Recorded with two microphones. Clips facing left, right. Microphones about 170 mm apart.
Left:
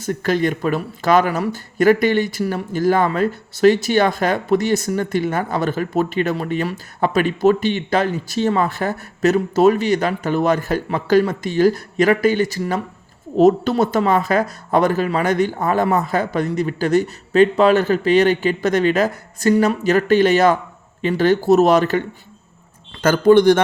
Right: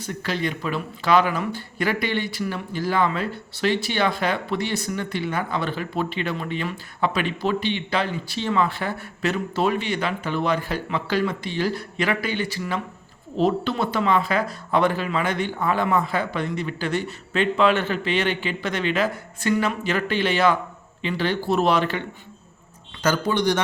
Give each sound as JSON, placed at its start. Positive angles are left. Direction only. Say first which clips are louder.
{"t": 0.0, "sound": "speech", "louder": "left 8 dB", "side_deg": 45}